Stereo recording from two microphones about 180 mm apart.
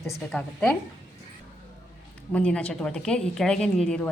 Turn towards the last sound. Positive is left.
turn(degrees=5)  # may be behind; listen again after turning